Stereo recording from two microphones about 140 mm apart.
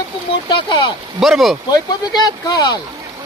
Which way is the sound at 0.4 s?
35° left (ahead or behind).